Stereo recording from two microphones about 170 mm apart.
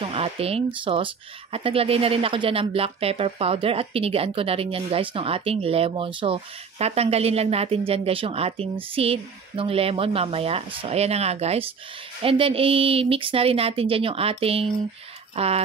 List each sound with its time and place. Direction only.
0.0 s speech: 35° right (ahead or behind)